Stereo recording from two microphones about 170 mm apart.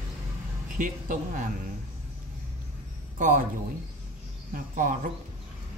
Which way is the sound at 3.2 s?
50° right (ahead or behind).